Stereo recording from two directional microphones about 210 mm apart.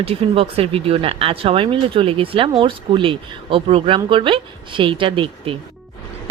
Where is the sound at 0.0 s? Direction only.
30° right (ahead or behind).